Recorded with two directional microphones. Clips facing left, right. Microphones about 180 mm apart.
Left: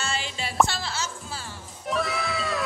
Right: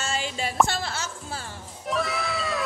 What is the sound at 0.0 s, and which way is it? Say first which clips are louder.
Music: right 2 dB; 45° right (ahead or behind).